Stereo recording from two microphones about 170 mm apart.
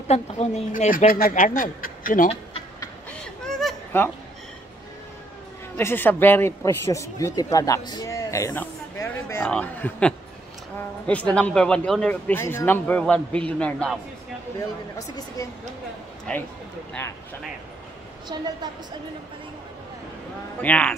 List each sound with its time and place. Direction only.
0.1 s speech: 45° left (ahead or behind)
3.1 s a sound: 5° left (ahead or behind)
5.8 s a man's voice: 15° left (ahead or behind)
15.0 s a woman's voice: 20° left (ahead or behind)
16.3 s speech: 5° left (ahead or behind)
18.3 s a woman's voice: 25° right (ahead or behind)
20.6 s speech: 10° left (ahead or behind)